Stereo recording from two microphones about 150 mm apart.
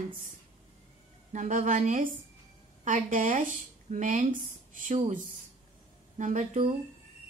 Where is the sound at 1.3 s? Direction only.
60° right (ahead or behind).